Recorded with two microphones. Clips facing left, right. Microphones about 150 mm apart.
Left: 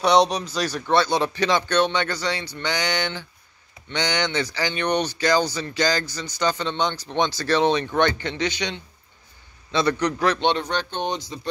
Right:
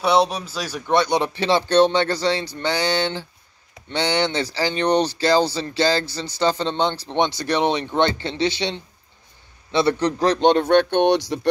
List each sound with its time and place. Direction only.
0.0 s speech: 5° right (ahead or behind); by 11.4 s 75° right (ahead or behind)